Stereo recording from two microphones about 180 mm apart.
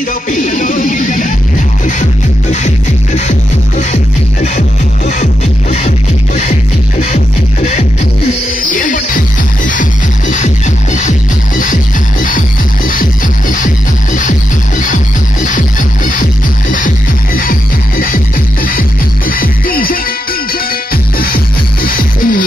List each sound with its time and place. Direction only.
0.3 s music: 45° left (ahead or behind)
5.0 s music: 40° left (ahead or behind)
8.7 s music: 50° left (ahead or behind)
17.4 s music: 55° left (ahead or behind)